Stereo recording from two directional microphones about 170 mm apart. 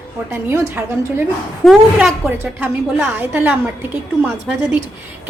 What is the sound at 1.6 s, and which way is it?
Speech, 5° left (ahead or behind).